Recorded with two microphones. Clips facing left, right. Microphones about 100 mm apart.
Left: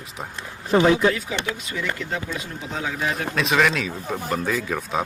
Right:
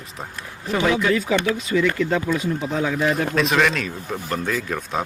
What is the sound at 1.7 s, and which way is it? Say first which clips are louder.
Speech: right 12 dB; 80° right.